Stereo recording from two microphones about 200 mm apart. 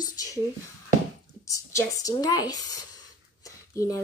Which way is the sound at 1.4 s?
15° left (ahead or behind).